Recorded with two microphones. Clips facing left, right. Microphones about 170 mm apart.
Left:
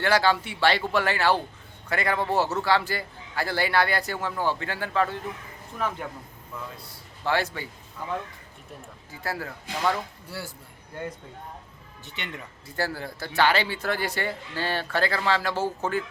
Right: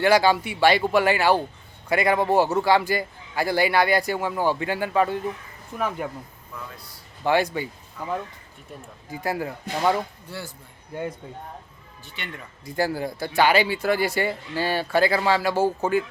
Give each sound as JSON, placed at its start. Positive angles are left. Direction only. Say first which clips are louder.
{"t": 0.0, "sound": "speech", "louder": "right 4 dB", "side_deg": -15}
{"t": 7.3, "sound": "speech", "louder": "right 5 dB", "side_deg": -15}
{"t": 9.2, "sound": "speech", "louder": "right 5 dB", "side_deg": -15}
{"t": 10.2, "sound": "speech", "louder": "right 1 dB", "side_deg": 10}
{"t": 12.0, "sound": "speech", "louder": "even", "side_deg": 20}
{"t": 12.6, "sound": "speech", "louder": "right 6 dB", "side_deg": -15}